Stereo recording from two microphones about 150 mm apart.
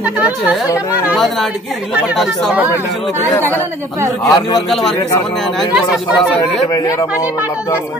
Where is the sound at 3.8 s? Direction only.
15° right (ahead or behind).